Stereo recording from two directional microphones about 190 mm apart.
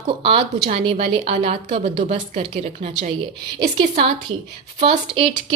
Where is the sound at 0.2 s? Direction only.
30° right (ahead or behind).